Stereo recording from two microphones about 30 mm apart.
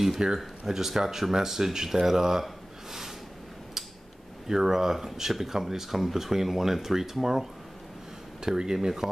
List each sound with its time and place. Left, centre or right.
0.2 s speech: right
0.7 s speech: centre
4.5 s speech: centre
8.4 s speech: right